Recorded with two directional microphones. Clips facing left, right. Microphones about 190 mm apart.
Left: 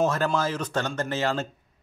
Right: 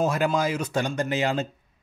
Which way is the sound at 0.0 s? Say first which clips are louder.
Right 1 dB; 10° right (ahead or behind).